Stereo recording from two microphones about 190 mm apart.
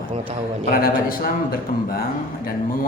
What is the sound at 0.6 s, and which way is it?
Speech, 50° left (ahead or behind).